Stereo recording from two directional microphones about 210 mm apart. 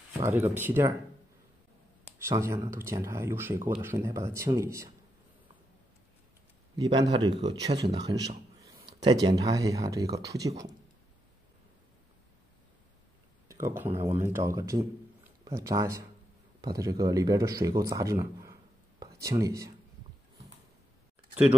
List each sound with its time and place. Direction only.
0.2 s speech: 10° right (ahead or behind)
2.2 s speech: 10° right (ahead or behind)
6.8 s speech: 20° right (ahead or behind)
13.5 s speech: 10° right (ahead or behind)